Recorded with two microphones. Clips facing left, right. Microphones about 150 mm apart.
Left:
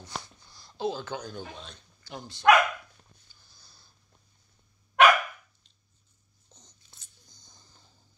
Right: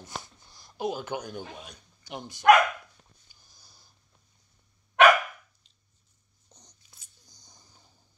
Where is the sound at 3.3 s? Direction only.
15° right (ahead or behind).